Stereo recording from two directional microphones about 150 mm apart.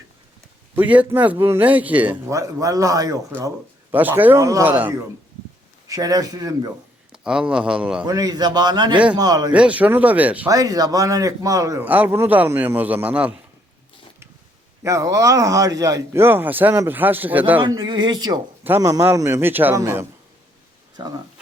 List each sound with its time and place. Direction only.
0.8 s a man's voice: 10° right (ahead or behind)
5.9 s speech: 25° right (ahead or behind)
7.1 s speech: 5° right (ahead or behind)
8.0 s speech: 25° right (ahead or behind)
9.5 s a man's voice: 10° right (ahead or behind)
10.5 s a man's voice: 25° right (ahead or behind)
14.8 s a man's voice: 20° right (ahead or behind)
17.6 s speech: 30° right (ahead or behind)
18.6 s a man's voice: 15° right (ahead or behind)
20.9 s speech: 30° right (ahead or behind)